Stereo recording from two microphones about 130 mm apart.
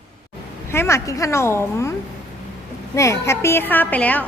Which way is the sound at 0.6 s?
20° left (ahead or behind).